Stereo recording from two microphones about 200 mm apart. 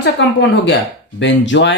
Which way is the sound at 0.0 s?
60° left (ahead or behind).